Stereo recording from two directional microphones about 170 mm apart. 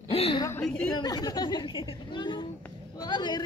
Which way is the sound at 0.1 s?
35° left (ahead or behind).